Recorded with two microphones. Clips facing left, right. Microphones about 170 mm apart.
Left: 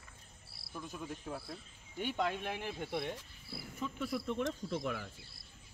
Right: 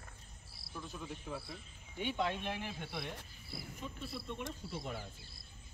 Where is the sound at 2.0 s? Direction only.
45° left (ahead or behind).